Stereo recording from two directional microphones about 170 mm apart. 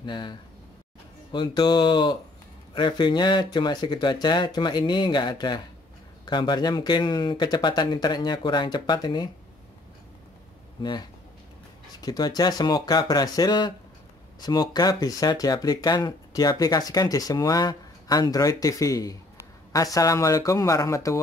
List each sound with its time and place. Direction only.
0.0 s speech: 25° left (ahead or behind)
10.8 s speech: 25° left (ahead or behind)